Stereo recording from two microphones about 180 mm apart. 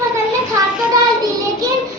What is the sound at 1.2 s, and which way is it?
Child singing, 20° right (ahead or behind).